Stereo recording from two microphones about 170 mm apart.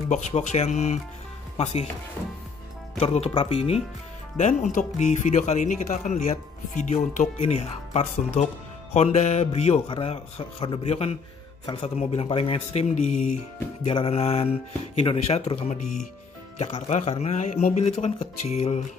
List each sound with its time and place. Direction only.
0.3 s a man's voice: 40° left (ahead or behind)
3.0 s a man's voice: 35° left (ahead or behind)